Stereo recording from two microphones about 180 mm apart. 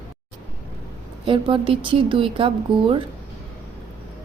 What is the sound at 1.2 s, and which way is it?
A woman's voice, 30° right (ahead or behind).